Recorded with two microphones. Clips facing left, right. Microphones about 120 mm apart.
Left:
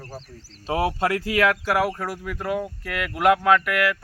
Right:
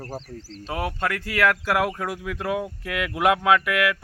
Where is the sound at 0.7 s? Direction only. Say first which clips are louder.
Left 4 dB; 25° left (ahead or behind).